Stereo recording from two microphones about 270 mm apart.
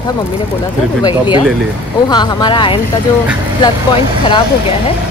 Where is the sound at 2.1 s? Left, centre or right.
Centre.